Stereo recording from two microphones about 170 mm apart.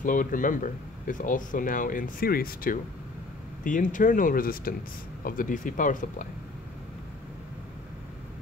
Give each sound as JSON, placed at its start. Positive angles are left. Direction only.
{"t": 0.0, "sound": "speech", "side_deg": 50}